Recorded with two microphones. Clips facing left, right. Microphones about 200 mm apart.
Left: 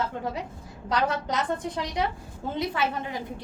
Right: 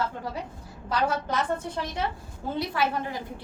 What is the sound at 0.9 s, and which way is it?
A woman's voice, 20° left (ahead or behind).